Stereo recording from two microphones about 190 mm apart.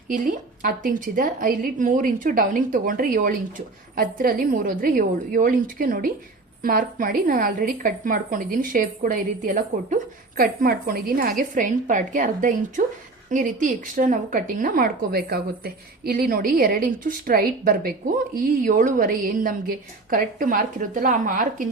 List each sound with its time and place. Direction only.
0.1 s a woman's voice: 45° right (ahead or behind)